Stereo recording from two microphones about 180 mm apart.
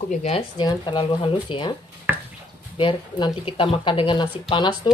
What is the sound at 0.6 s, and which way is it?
Speech, 25° left (ahead or behind).